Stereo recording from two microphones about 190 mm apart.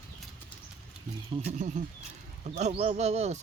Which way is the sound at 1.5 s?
40° right (ahead or behind).